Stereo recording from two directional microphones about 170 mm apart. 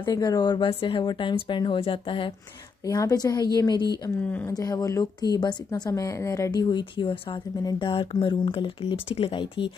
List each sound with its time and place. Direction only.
0.0 s speech: 20° left (ahead or behind)
4.3 s speech: 10° left (ahead or behind)
4.6 s speech: 20° left (ahead or behind)